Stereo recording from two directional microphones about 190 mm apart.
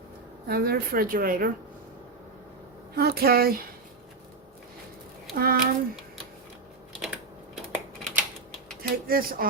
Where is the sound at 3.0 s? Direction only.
55° right (ahead or behind).